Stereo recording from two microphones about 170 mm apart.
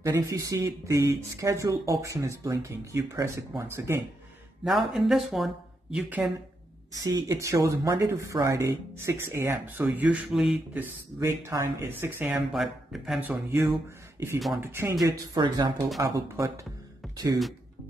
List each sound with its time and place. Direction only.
0.0 s speech: 15° right (ahead or behind)
4.6 s speech: centre (ahead or behind)
6.9 s speech: 20° right (ahead or behind)